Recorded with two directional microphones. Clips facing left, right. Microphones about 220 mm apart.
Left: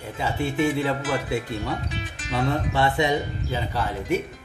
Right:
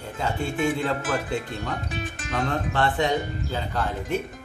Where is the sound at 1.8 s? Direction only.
50° right (ahead or behind).